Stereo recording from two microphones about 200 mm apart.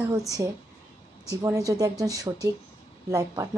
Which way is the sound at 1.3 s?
15° right (ahead or behind).